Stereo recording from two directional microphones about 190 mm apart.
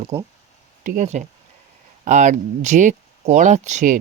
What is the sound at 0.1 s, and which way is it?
Speech, 25° right (ahead or behind).